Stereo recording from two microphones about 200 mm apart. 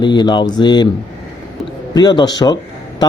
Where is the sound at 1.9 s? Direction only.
20° left (ahead or behind).